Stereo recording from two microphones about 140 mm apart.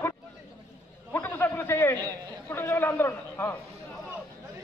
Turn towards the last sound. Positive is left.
turn(degrees=15)  # may be behind; listen again after turning